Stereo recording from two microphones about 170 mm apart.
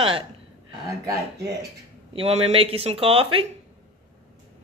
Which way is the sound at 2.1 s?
35° right (ahead or behind).